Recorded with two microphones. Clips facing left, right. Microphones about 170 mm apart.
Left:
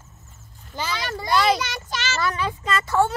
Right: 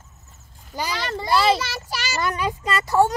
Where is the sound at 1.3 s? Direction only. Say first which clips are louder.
Right 1 dB; 5° right (ahead or behind).